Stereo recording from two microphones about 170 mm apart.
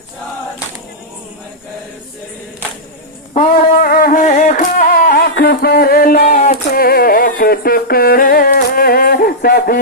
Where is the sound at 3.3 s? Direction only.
60° left (ahead or behind).